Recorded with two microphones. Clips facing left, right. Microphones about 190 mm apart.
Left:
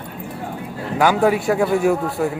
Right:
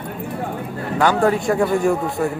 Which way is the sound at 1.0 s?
5° left (ahead or behind).